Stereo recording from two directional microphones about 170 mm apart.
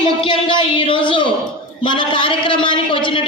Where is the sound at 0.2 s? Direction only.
30° left (ahead or behind).